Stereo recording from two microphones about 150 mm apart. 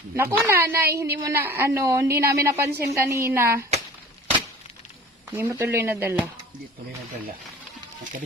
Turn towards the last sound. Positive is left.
turn(degrees=-15)  # may be behind; listen again after turning